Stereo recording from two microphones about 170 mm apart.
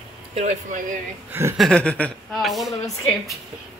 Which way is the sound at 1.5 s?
5° left (ahead or behind).